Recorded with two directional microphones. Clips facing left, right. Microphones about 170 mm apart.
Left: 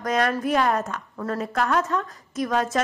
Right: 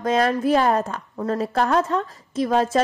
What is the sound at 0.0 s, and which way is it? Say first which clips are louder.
A woman's voice: right 3 dB; 25° right (ahead or behind).